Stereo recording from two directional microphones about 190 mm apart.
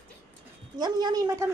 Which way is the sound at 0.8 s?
20° right (ahead or behind).